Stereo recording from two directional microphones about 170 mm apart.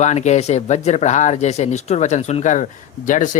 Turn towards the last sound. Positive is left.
turn(degrees=50)  # may be behind; listen again after turning